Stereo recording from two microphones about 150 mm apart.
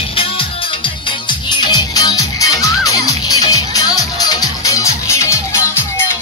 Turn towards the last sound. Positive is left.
turn(degrees=20)  # may be behind; listen again after turning